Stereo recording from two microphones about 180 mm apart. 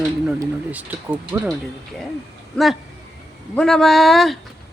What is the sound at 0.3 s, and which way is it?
Speech, 10° right (ahead or behind).